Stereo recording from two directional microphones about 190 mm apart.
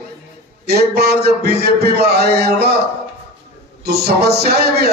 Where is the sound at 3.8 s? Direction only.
55° right (ahead or behind).